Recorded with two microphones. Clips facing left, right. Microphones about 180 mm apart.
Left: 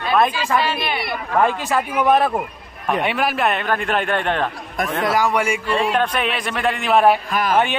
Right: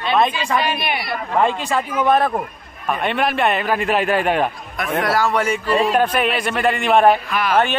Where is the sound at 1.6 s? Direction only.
10° left (ahead or behind); by 4.4 s 5° right (ahead or behind).